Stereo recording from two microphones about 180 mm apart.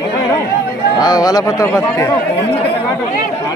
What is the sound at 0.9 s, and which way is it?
Speech, 20° left (ahead or behind).